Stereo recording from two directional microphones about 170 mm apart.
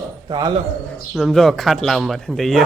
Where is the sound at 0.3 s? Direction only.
25° right (ahead or behind).